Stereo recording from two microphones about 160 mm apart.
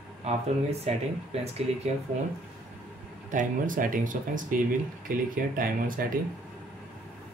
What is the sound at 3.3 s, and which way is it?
Speech, 55° right (ahead or behind).